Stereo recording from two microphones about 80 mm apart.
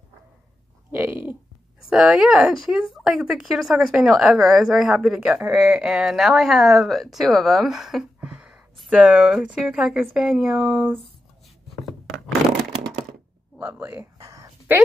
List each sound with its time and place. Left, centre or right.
0.9 s speech: right
1.9 s a woman's voice: centre
8.2 s a sound: centre
8.9 s speech: centre
13.6 s speech: centre
14.1 s a sound: right